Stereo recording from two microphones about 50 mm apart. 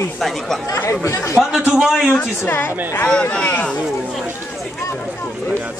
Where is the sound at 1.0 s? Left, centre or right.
Left.